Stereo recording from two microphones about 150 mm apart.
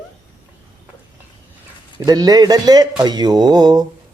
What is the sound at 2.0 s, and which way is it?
Speech, 25° right (ahead or behind).